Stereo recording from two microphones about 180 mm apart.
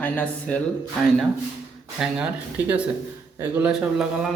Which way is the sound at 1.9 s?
5° right (ahead or behind).